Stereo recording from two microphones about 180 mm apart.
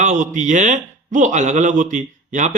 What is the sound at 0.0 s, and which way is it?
A man's voice, 45° right (ahead or behind).